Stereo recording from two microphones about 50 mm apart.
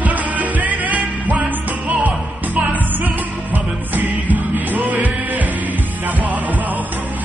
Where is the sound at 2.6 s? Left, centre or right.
Right.